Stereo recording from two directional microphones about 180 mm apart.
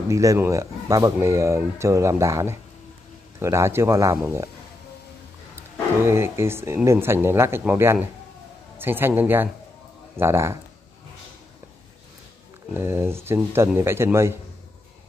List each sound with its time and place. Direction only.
0.1 s speech: 15° right (ahead or behind)
6.0 s speech: 15° right (ahead or behind)
12.7 s speech: 15° right (ahead or behind)